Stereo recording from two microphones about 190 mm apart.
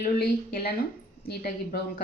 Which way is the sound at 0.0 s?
55° left (ahead or behind).